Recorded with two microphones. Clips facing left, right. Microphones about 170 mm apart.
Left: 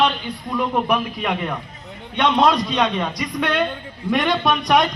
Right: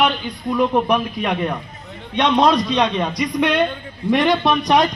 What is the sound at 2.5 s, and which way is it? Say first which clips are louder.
Speech: right 2 dB; 5° left (ahead or behind).